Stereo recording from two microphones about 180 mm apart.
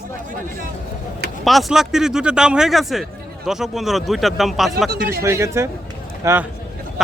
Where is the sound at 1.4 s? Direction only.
Centre (ahead or behind).